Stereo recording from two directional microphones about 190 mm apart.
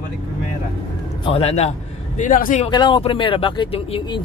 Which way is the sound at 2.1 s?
45° left (ahead or behind).